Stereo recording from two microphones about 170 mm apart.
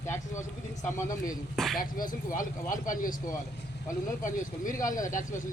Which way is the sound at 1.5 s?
Centre (ahead or behind).